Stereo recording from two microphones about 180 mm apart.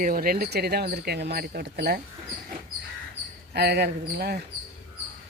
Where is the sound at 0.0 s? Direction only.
50° right (ahead or behind).